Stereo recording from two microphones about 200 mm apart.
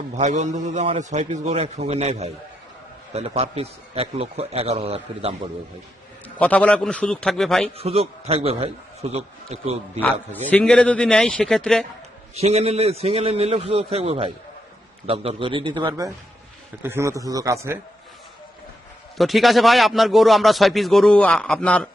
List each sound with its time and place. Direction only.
0.2 s a man's voice: 35° right (ahead or behind)
6.2 s a man's voice: 5° left (ahead or behind)
7.8 s a man's voice: 30° right (ahead or behind)
10.0 s a man's voice: 10° left (ahead or behind)
12.3 s a man's voice: 30° right (ahead or behind); by 17.7 s 15° right (ahead or behind)
19.1 s a man's voice: centre (ahead or behind)